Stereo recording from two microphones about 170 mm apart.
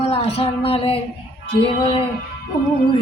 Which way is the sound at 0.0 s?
35° left (ahead or behind).